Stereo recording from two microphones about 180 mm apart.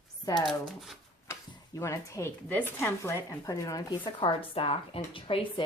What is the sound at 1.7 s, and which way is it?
Speech, 15° left (ahead or behind).